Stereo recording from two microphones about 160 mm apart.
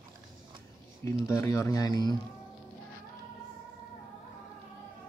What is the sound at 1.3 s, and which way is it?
Speech, 20° left (ahead or behind).